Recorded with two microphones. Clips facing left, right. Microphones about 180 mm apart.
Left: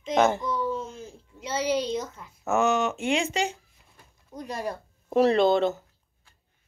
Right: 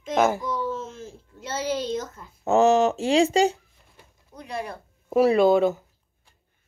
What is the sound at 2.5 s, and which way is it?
Speech, 30° right (ahead or behind).